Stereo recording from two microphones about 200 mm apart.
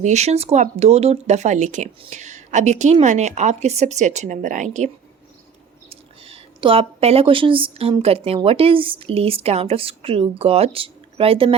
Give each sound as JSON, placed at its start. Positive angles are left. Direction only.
{"t": 0.0, "sound": "speech", "side_deg": -35}
{"t": 5.9, "sound": "speech", "side_deg": -30}